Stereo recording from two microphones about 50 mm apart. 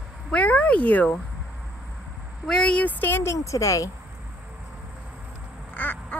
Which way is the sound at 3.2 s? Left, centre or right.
Left.